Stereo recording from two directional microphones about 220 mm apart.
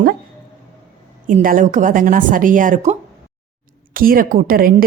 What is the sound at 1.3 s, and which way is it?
A woman's voice, 35° right (ahead or behind).